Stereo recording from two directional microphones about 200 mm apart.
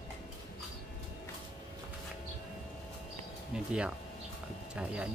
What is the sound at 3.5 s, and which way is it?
Speech, 5° right (ahead or behind).